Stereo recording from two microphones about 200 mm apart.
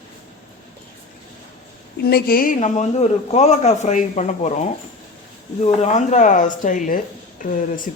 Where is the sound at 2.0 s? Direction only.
50° left (ahead or behind).